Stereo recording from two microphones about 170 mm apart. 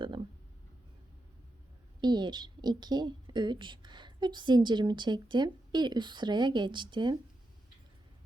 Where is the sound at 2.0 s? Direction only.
25° right (ahead or behind).